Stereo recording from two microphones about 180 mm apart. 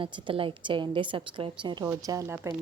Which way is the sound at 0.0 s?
25° right (ahead or behind).